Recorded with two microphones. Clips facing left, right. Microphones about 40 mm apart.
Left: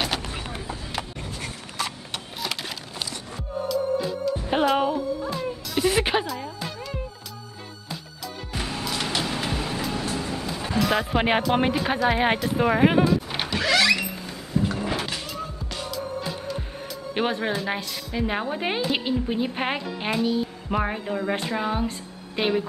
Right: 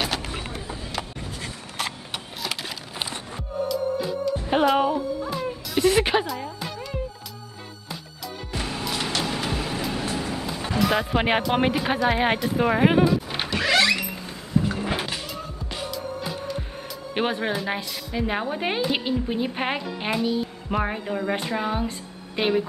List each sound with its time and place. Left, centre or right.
2.1 s printer: centre
3.6 s music: centre
8.5 s music: centre
13.6 s power windows: centre
13.9 s a sound: centre
14.7 s music: centre
17.1 s speech: centre